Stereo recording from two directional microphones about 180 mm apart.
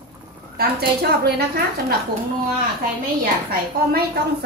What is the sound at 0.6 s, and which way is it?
A woman's voice, 60° right (ahead or behind).